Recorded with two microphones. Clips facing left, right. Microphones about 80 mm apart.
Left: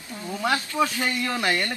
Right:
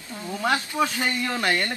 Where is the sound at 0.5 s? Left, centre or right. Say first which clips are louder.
Even; centre.